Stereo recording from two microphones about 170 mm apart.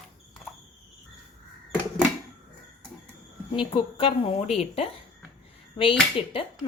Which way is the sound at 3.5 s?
30° left (ahead or behind).